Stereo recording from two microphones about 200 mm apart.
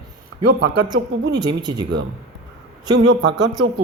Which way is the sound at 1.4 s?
20° right (ahead or behind).